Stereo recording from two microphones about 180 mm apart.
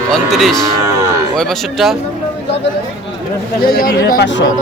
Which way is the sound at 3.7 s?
55° left (ahead or behind).